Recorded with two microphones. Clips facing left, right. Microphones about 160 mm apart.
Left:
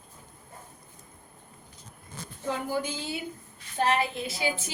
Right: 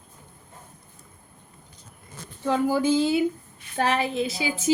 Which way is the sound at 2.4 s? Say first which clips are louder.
Right 9 dB; 90° right.